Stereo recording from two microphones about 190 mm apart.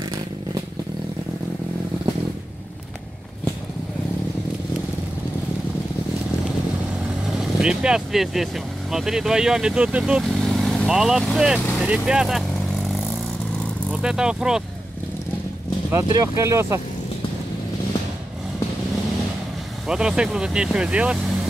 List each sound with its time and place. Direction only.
7.3 s speech: 5° right (ahead or behind)
14.0 s speech: 5° right (ahead or behind)
15.9 s speech: 15° right (ahead or behind)
19.9 s speech: 5° right (ahead or behind)